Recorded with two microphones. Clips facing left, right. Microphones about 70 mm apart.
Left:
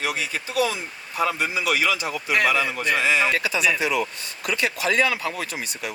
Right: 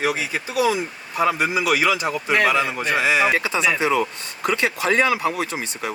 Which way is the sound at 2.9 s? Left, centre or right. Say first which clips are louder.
Right 3 dB; centre.